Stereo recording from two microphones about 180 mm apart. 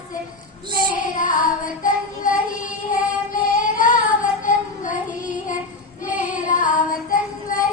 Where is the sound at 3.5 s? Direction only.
50° left (ahead or behind).